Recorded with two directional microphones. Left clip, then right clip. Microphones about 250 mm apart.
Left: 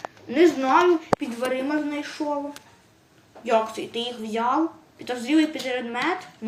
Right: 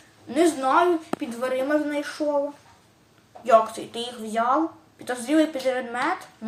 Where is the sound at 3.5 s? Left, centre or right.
Centre.